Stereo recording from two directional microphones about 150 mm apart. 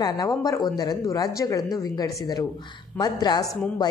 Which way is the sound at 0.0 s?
25° left (ahead or behind).